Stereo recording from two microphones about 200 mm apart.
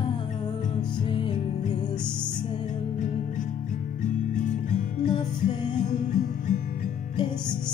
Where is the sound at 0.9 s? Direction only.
25° left (ahead or behind).